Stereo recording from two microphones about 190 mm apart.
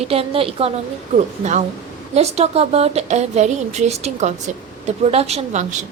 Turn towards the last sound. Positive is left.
turn(degrees=-40)  # may be behind; listen again after turning